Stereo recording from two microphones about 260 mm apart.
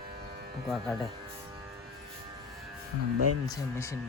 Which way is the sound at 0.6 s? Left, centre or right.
Centre.